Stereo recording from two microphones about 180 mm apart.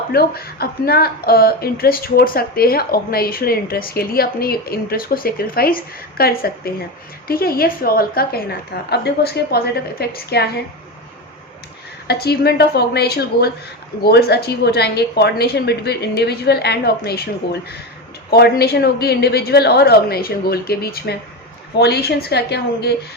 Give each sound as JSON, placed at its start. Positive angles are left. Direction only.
{"t": 0.1, "sound": "speech", "side_deg": 60}
{"t": 12.0, "sound": "speech", "side_deg": 65}